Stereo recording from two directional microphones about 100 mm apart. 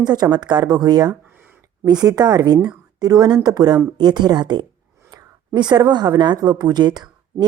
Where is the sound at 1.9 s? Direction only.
40° right (ahead or behind).